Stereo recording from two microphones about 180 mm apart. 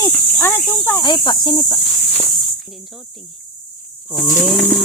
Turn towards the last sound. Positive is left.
turn(degrees=0)  # may be behind; listen again after turning